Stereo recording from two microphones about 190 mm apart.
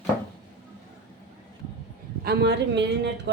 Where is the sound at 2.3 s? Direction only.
60° right (ahead or behind).